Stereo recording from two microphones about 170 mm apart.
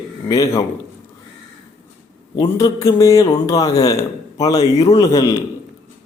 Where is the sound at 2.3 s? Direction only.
20° left (ahead or behind).